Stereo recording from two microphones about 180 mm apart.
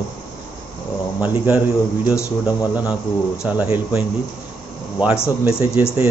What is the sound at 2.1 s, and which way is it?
Speech, 20° left (ahead or behind).